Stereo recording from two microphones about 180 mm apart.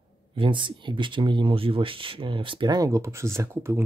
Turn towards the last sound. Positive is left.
turn(degrees=-15)  # may be behind; listen again after turning